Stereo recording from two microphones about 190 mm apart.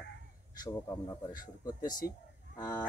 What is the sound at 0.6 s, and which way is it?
A man's voice, 10° left (ahead or behind).